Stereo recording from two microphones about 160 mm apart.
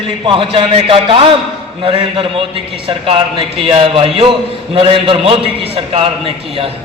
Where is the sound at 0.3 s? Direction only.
35° right (ahead or behind).